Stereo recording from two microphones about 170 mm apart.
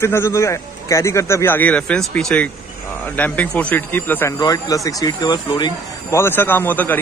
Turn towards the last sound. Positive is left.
turn(degrees=10)  # may be behind; listen again after turning